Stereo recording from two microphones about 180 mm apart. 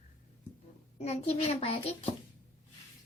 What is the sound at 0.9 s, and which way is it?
Speech, 35° left (ahead or behind).